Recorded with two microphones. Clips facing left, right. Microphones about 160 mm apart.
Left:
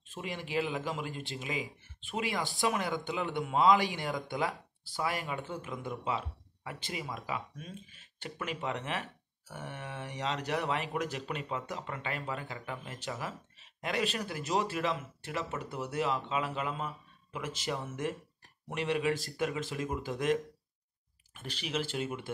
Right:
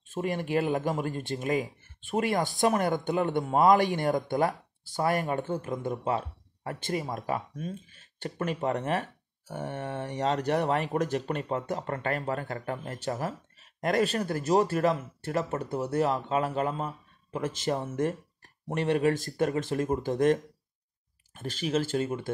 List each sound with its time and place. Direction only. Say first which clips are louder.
0.1 s speech: right 7 dB; 50° right (ahead or behind)